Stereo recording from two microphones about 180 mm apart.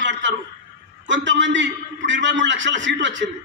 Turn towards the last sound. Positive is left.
turn(degrees=-90)